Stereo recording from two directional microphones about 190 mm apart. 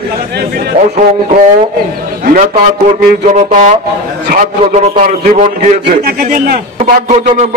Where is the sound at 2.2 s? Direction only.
50° right (ahead or behind).